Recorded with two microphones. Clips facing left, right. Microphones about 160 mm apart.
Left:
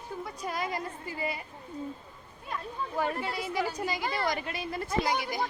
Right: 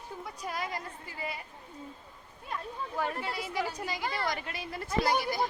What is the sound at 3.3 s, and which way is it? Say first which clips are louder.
Speech: left 2 dB; 5° right (ahead or behind).